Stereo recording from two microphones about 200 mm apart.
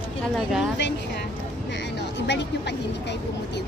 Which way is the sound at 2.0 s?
60° left (ahead or behind).